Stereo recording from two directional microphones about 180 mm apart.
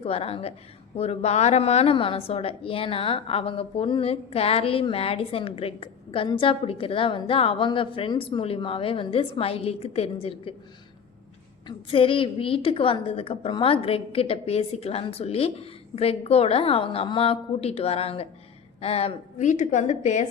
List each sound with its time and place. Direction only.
0.0 s a woman's voice: 35° left (ahead or behind)
11.9 s a woman's voice: 30° left (ahead or behind)